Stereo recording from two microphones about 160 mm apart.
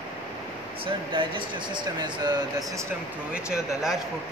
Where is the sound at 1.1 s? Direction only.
30° right (ahead or behind).